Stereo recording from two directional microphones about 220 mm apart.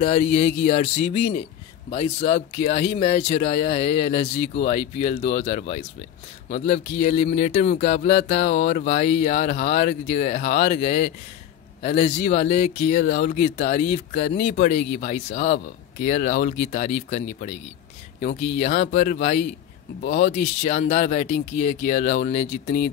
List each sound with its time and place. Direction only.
0.0 s speech: 30° left (ahead or behind)
8.1 s mantra: 50° left (ahead or behind)
8.9 s speech: 35° left (ahead or behind)
13.0 s mantra: 50° left (ahead or behind)
13.3 s speech: 35° left (ahead or behind)
20.0 s mantra: 50° left (ahead or behind)
20.2 s speech: 30° left (ahead or behind)